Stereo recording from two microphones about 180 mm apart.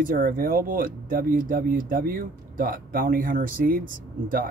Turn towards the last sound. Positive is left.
turn(degrees=-50)  # may be behind; listen again after turning